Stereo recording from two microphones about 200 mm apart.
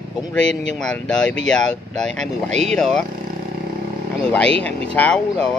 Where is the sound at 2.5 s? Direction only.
35° right (ahead or behind).